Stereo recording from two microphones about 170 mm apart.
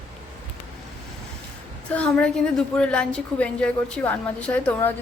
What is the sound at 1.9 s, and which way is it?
A woman's voice, 5° left (ahead or behind).